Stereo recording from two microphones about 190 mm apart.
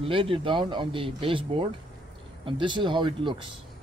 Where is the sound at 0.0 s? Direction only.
30° right (ahead or behind).